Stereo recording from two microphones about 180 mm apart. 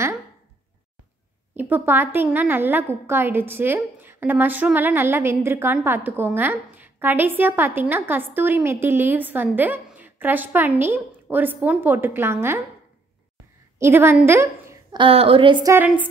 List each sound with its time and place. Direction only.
1.5 s a woman's voice: 10° right (ahead or behind)
13.7 s a woman's voice: 15° right (ahead or behind)
15.0 s a woman's voice: 30° right (ahead or behind)
15.7 s a woman's voice: 10° right (ahead or behind)